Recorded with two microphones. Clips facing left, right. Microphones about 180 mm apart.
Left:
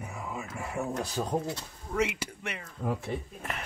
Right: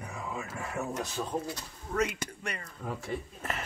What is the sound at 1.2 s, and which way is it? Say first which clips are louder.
Speech: left 4 dB; 35° left (ahead or behind).